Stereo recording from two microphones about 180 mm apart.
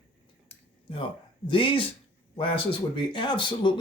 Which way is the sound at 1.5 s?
30° left (ahead or behind).